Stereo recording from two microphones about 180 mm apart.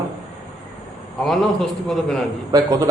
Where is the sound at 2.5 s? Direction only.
20° right (ahead or behind).